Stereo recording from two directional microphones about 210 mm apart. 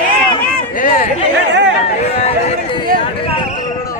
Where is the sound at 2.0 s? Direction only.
25° left (ahead or behind).